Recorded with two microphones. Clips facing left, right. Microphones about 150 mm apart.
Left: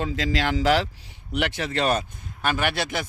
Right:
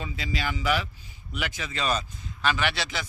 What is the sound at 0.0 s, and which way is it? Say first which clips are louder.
Speech: left 7 dB; 90° left.